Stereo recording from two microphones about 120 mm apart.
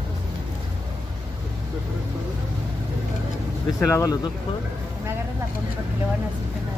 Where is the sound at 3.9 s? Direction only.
30° left (ahead or behind).